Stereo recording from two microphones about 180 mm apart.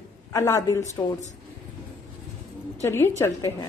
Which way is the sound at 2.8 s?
15° left (ahead or behind).